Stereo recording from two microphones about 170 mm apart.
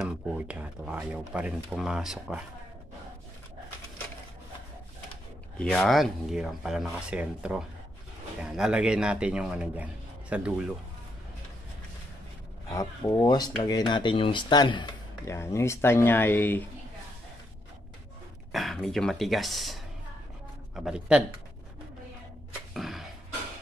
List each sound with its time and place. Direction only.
0.0 s speech: 5° right (ahead or behind)
5.6 s a man's voice: 5° left (ahead or behind)
12.6 s speech: 20° left (ahead or behind)
18.5 s speech: centre (ahead or behind)
22.8 s a sound: centre (ahead or behind)